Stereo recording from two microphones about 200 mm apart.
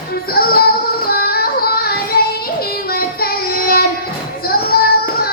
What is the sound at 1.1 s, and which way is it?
Child singing, 50° left (ahead or behind).